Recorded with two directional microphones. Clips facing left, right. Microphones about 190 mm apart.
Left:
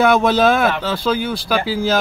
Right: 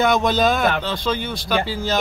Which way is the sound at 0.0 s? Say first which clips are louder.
Left 4 dB; 5° left (ahead or behind).